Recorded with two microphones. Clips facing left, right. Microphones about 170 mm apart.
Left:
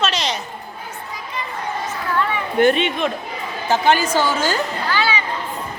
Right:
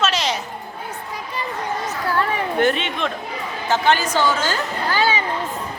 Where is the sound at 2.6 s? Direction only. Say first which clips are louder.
Left 5 dB; 15° left (ahead or behind).